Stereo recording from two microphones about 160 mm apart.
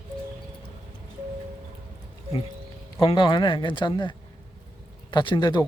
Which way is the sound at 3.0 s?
35° left (ahead or behind).